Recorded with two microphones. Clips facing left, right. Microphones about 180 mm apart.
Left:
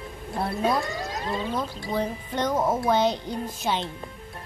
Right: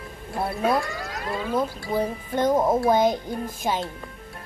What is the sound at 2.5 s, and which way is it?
Speech, 20° right (ahead or behind).